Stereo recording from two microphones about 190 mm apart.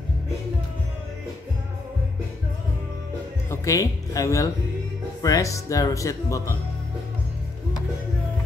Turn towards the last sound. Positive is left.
turn(degrees=15)  # may be behind; listen again after turning